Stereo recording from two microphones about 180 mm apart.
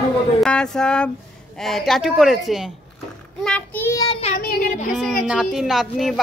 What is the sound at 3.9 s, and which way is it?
Child singing, 30° left (ahead or behind).